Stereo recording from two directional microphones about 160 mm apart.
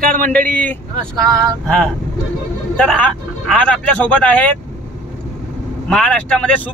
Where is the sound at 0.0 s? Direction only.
60° right (ahead or behind).